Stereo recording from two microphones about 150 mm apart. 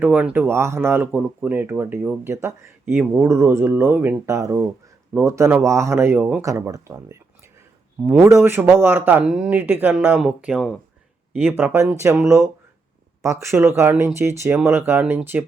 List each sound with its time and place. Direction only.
0.0 s speech: 10° right (ahead or behind)